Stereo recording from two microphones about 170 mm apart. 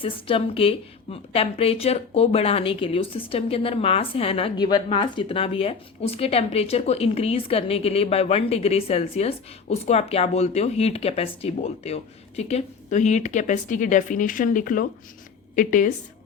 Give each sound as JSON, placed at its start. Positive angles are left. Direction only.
{"t": 0.0, "sound": "a woman's voice", "side_deg": 30}